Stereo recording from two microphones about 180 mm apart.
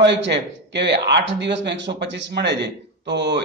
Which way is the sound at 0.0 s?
75° right (ahead or behind).